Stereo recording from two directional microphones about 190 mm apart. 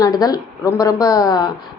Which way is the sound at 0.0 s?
20° left (ahead or behind).